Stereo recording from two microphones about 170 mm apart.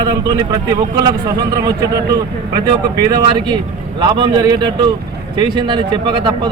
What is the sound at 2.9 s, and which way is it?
A man's voice, 20° right (ahead or behind).